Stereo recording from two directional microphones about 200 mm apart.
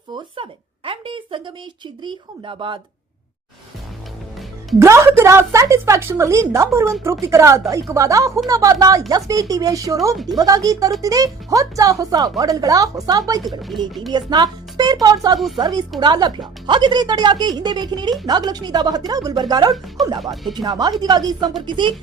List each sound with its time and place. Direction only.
0.9 s a sound: 25° right (ahead or behind)
2.0 s speech: 25° right (ahead or behind)
4.8 s a woman's voice: 15° right (ahead or behind)
13.6 s speech: centre (ahead or behind)
14.1 s speech: 20° right (ahead or behind)